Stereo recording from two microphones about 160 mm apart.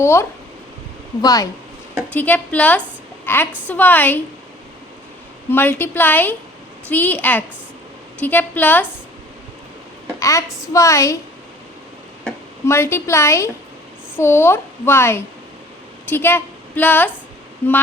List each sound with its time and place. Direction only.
0.0 s a woman's voice: 15° left (ahead or behind)
2.1 s a woman's voice: 10° left (ahead or behind)
5.5 s a woman's voice: 10° left (ahead or behind)
10.2 s a woman's voice: 20° left (ahead or behind)
12.6 s a woman's voice: 15° left (ahead or behind)